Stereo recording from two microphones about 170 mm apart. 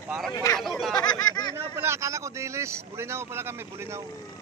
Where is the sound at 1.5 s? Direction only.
15° right (ahead or behind).